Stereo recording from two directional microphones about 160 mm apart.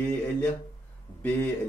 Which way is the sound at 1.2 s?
10° left (ahead or behind).